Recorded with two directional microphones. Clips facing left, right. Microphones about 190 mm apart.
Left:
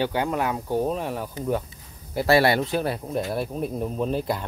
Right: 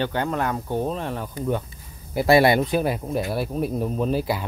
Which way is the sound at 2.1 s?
15° right (ahead or behind).